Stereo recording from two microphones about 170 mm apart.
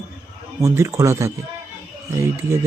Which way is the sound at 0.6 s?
15° right (ahead or behind).